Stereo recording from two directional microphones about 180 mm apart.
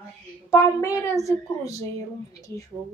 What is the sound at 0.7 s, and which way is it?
A woman's voice, 15° left (ahead or behind).